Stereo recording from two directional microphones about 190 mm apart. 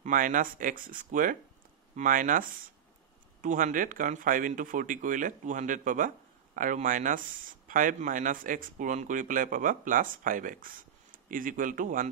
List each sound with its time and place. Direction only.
0.0 s speech: 45° right (ahead or behind)